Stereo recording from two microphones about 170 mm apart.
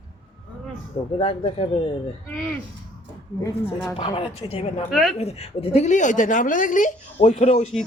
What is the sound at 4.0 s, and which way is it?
Speech, 30° left (ahead or behind).